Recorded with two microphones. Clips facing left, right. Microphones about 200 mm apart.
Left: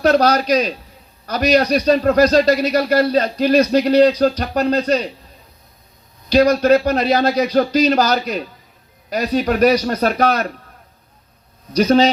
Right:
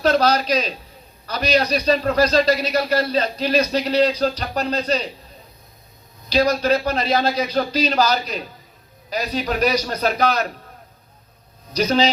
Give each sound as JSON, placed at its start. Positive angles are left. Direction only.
{"t": 0.1, "sound": "a man's voice", "side_deg": 45}
{"t": 6.3, "sound": "a man's voice", "side_deg": 45}
{"t": 11.8, "sound": "a man's voice", "side_deg": 45}